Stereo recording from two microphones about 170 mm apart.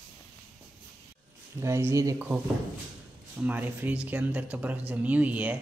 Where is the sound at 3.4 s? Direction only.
10° right (ahead or behind).